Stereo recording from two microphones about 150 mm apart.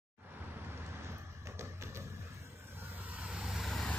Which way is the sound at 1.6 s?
20° right (ahead or behind).